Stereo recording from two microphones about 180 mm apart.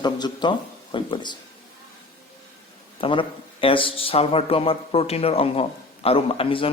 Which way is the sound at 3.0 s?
30° left (ahead or behind).